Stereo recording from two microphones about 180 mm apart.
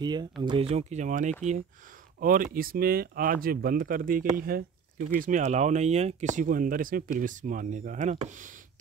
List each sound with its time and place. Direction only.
0.0 s speech: 25° right (ahead or behind); by 8.5 s 40° right (ahead or behind)